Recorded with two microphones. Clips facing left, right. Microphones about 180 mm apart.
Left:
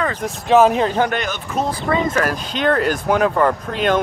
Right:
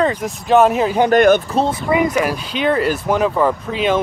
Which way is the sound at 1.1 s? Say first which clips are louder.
Right 13 dB; 55° right (ahead or behind).